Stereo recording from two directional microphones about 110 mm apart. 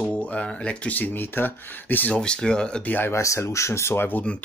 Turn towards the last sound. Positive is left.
turn(degrees=15)  # may be behind; listen again after turning